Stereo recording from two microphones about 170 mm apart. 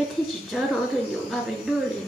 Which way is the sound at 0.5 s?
Centre (ahead or behind).